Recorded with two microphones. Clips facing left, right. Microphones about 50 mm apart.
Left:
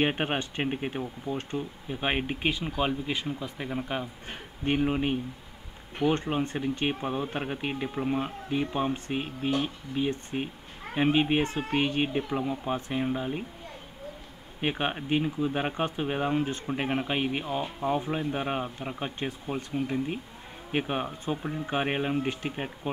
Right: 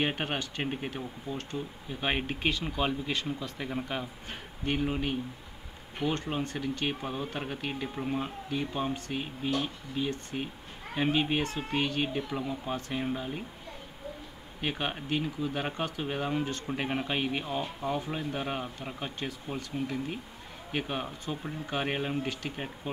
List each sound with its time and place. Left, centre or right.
0.0 s speech: left
4.6 s speech: centre
14.6 s speech: left